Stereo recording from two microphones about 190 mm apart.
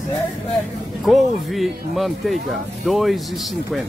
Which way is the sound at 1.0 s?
Centre (ahead or behind).